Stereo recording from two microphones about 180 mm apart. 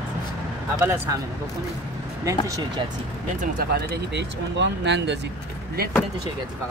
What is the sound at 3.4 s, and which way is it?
Speech, 55° right (ahead or behind).